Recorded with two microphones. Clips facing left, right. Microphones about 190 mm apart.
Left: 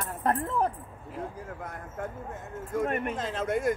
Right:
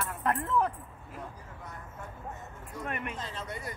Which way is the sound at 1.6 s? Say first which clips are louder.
Left 7 dB; 50° left (ahead or behind).